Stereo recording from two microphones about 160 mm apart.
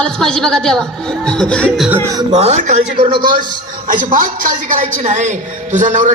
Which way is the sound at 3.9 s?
55° right (ahead or behind).